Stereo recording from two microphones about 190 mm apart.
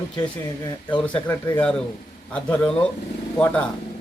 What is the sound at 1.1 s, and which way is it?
Speech, 5° left (ahead or behind).